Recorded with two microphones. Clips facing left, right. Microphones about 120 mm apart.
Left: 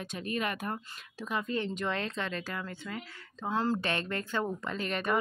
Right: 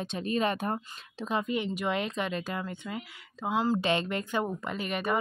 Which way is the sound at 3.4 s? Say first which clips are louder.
Right 2 dB; 5° right (ahead or behind).